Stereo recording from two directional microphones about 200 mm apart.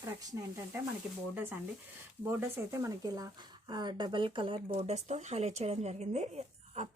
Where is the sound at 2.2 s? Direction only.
10° right (ahead or behind).